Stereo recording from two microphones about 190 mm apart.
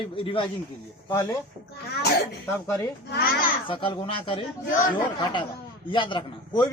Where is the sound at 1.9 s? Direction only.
60° left (ahead or behind).